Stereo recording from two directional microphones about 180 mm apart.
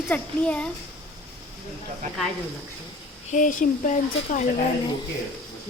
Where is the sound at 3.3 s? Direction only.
45° left (ahead or behind).